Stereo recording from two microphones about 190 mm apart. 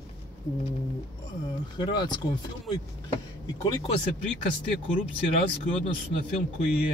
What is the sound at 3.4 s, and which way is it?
Speech, 20° left (ahead or behind).